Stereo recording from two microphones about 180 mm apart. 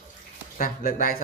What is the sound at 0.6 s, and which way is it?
Speech, 50° left (ahead or behind).